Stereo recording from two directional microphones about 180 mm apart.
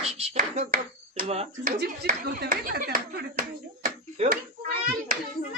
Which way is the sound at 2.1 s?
50° right (ahead or behind).